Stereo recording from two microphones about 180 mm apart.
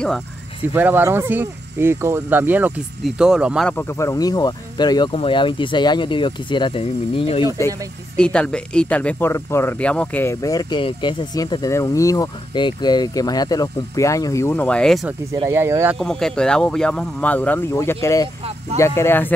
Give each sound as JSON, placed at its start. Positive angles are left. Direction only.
{"t": 0.7, "sound": "speech", "side_deg": -10}
{"t": 3.6, "sound": "speech", "side_deg": 15}
{"t": 8.2, "sound": "speech", "side_deg": 5}
{"t": 15.3, "sound": "speech", "side_deg": -15}
{"t": 16.0, "sound": "speech", "side_deg": 5}